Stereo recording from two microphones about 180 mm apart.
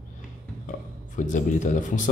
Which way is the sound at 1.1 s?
45° left (ahead or behind).